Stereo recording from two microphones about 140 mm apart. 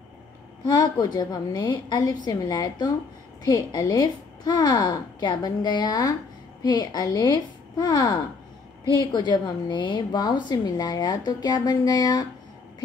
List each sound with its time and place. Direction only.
0.7 s a woman's voice: 30° left (ahead or behind)